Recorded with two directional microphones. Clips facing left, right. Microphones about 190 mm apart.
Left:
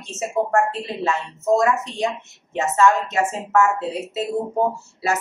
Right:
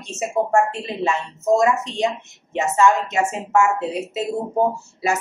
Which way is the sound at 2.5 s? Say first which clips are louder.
Even; 15° right (ahead or behind).